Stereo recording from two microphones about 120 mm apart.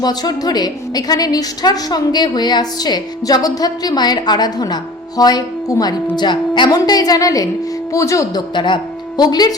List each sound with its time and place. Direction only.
0.0 s a woman's voice: 35° left (ahead or behind)